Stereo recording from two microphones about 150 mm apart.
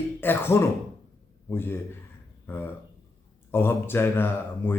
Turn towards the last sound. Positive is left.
turn(degrees=15)  # may be behind; listen again after turning